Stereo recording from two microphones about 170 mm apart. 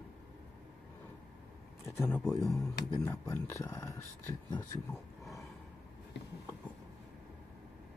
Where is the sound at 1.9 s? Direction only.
15° left (ahead or behind).